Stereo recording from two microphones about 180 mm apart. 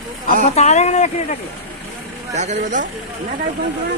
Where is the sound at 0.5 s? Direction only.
40° left (ahead or behind).